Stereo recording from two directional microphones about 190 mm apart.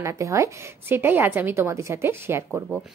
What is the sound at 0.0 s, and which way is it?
A woman's voice, 15° right (ahead or behind).